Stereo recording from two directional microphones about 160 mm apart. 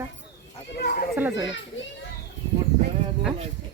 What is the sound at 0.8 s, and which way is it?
Chatter, 90° left.